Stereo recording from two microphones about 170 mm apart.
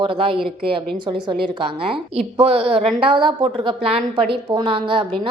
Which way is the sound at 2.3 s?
35° right (ahead or behind).